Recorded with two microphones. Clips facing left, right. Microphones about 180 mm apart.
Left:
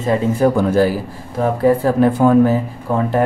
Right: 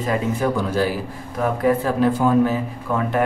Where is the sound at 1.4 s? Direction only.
30° left (ahead or behind).